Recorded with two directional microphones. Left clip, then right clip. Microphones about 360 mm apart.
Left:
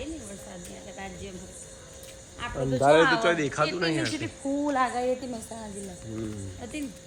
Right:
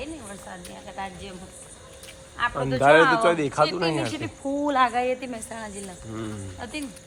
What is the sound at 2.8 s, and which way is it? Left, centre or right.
A woman's voice, right.